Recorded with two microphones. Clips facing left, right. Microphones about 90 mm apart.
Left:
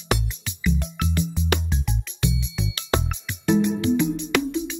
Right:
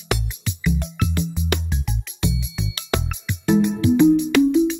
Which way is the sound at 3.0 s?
15° right (ahead or behind).